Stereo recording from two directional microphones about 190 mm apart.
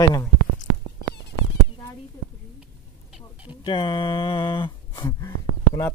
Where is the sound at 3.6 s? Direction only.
25° left (ahead or behind).